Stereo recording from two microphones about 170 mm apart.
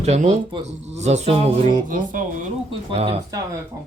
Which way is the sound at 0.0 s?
40° right (ahead or behind).